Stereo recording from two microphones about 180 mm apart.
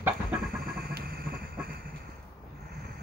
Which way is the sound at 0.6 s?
55° right (ahead or behind).